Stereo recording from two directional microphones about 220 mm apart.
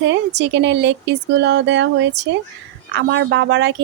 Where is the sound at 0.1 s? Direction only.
55° right (ahead or behind).